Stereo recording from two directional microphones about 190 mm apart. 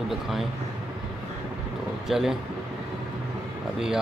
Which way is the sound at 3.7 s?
5° right (ahead or behind).